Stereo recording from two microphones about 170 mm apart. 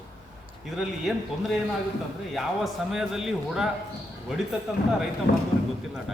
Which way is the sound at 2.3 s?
Centre (ahead or behind).